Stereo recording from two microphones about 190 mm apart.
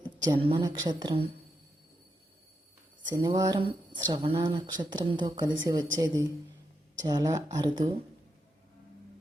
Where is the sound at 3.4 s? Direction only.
25° right (ahead or behind).